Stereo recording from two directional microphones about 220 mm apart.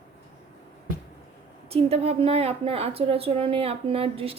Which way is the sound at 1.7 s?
25° right (ahead or behind).